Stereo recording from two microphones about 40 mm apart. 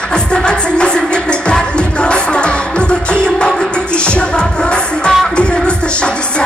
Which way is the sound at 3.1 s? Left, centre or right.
Left.